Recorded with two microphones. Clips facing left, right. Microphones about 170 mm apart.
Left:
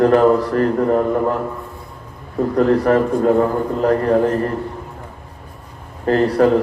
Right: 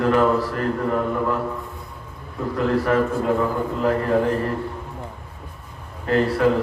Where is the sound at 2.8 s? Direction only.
40° left (ahead or behind).